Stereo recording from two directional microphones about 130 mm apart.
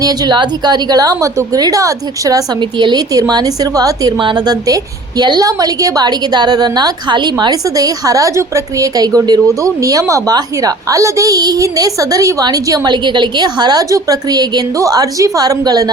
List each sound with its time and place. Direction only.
0.0 s a woman's voice: 30° right (ahead or behind)